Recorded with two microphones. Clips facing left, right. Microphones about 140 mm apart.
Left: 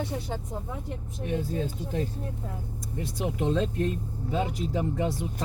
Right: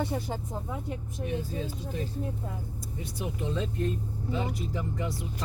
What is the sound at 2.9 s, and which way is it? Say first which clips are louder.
Speech: left 6 dB; 75° left (ahead or behind).